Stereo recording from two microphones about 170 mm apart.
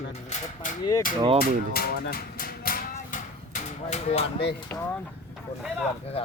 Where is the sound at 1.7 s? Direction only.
60° left (ahead or behind); by 4.3 s 40° left (ahead or behind).